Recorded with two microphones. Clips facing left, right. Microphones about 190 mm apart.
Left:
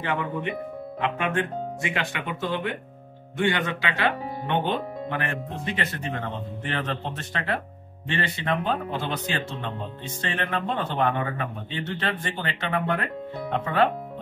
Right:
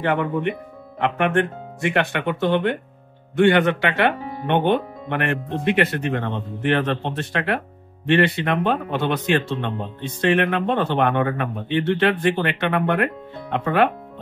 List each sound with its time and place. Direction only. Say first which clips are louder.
0.0 s speech: right 7 dB; 55° right (ahead or behind)